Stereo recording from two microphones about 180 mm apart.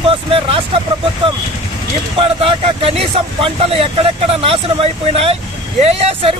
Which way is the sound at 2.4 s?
30° right (ahead or behind).